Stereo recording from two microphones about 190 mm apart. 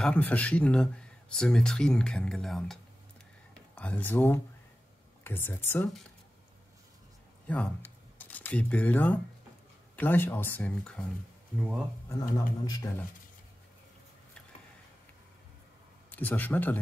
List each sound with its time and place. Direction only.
0.0 s speech: 10° left (ahead or behind)
7.5 s speech: 5° left (ahead or behind)
12.1 s speech: 20° left (ahead or behind)
16.1 s speech: 10° left (ahead or behind)